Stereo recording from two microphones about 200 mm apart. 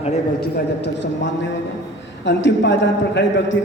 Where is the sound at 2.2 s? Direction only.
65° left (ahead or behind).